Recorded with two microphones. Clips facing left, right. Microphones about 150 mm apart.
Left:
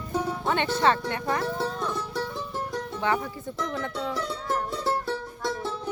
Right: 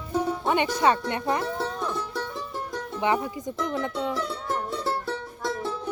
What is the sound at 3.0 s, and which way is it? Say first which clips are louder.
Speech: right 3 dB; 15° right (ahead or behind).